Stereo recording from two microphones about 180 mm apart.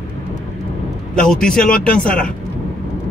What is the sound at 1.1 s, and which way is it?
Speech, 5° left (ahead or behind).